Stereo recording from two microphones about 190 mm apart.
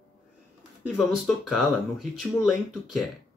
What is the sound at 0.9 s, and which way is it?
Speech, centre (ahead or behind).